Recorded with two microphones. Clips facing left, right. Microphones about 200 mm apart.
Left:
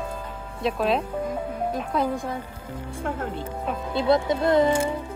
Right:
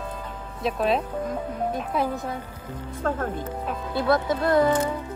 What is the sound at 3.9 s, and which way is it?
Speech, 20° left (ahead or behind).